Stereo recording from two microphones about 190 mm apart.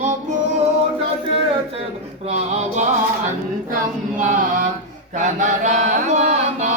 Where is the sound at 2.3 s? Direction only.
35° right (ahead or behind).